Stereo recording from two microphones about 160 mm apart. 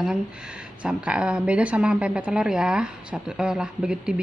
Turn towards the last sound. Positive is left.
turn(degrees=-5)  # may be behind; listen again after turning